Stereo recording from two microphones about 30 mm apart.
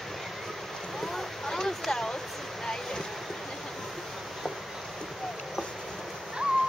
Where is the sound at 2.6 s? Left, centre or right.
Centre.